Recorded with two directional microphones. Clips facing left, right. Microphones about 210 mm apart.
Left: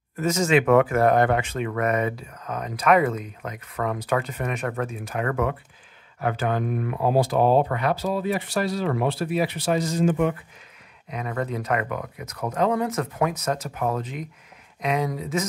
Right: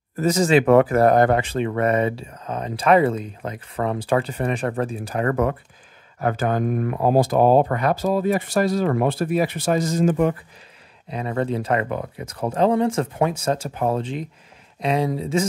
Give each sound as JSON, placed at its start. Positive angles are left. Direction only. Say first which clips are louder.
{"t": 0.1, "sound": "speech", "louder": "right 3 dB", "side_deg": -35}
{"t": 11.1, "sound": "speech", "louder": "right 5 dB", "side_deg": -30}